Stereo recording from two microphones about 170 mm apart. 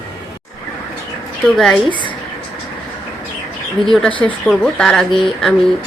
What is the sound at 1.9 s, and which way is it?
Speech, 30° left (ahead or behind).